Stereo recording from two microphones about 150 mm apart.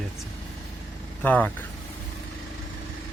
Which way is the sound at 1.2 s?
10° left (ahead or behind).